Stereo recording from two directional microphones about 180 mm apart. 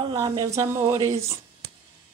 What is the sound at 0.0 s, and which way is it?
Speech, 20° right (ahead or behind).